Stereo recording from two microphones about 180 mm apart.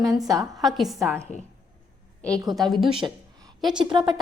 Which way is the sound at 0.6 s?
Centre (ahead or behind).